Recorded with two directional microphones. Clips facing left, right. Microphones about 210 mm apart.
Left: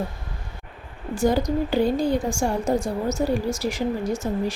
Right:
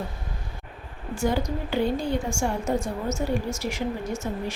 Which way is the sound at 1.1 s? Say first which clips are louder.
Left 5 dB; 35° left (ahead or behind).